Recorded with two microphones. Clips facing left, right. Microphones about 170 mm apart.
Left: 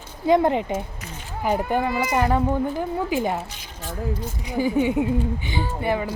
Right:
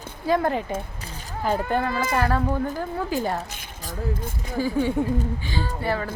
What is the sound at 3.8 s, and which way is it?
Speech, 45° right (ahead or behind).